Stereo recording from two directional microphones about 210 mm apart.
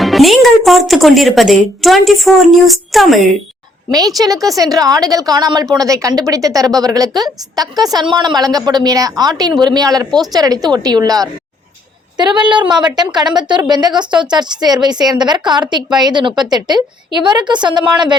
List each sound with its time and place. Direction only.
0.0 s a woman's voice: centre (ahead or behind)
4.2 s a woman's voice: 15° right (ahead or behind)